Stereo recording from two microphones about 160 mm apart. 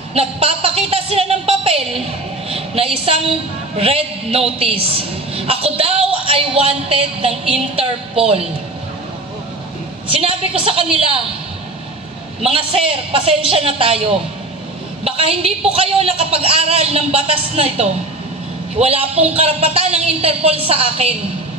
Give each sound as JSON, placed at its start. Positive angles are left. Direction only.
{"t": 0.1, "sound": "a woman's voice", "side_deg": -35}
{"t": 10.0, "sound": "a woman's voice", "side_deg": -35}
{"t": 12.4, "sound": "a woman's voice", "side_deg": -35}